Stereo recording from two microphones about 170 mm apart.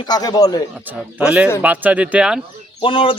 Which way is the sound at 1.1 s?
5° right (ahead or behind).